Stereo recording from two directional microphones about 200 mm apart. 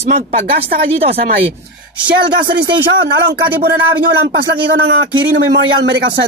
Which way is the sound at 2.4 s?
60° right (ahead or behind).